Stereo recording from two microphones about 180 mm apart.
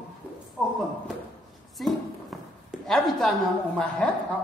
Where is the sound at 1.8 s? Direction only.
Centre (ahead or behind).